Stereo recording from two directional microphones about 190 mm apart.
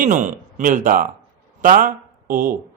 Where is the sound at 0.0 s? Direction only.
40° right (ahead or behind).